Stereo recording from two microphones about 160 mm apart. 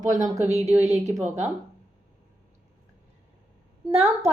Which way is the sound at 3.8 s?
40° right (ahead or behind).